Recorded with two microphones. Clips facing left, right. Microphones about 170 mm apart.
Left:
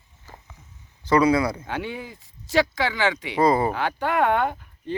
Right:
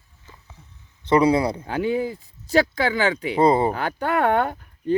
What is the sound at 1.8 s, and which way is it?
Speech, 40° right (ahead or behind).